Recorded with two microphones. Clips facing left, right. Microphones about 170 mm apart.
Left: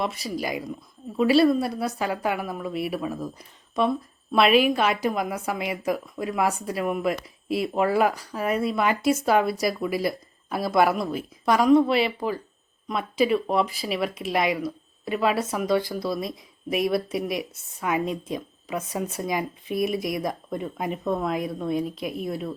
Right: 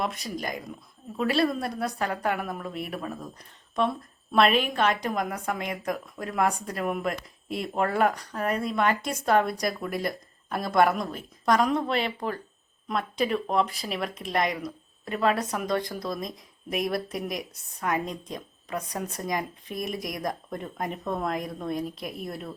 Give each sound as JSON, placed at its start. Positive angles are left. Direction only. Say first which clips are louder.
{"t": 0.0, "sound": "a woman's voice", "louder": "left 3 dB", "side_deg": 0}